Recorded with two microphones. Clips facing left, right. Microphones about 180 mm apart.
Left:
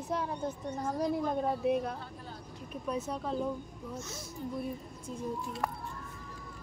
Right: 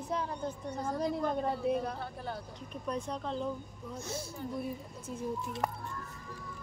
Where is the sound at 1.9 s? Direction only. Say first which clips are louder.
Right 5 dB; 70° right (ahead or behind).